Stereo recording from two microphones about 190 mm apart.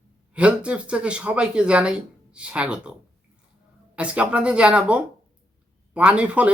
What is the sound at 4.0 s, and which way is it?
Speech, 5° right (ahead or behind).